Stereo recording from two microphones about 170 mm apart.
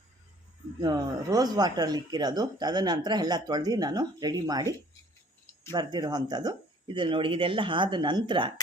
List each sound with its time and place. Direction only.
0.8 s speech: 20° right (ahead or behind)
5.7 s speech: 25° right (ahead or behind)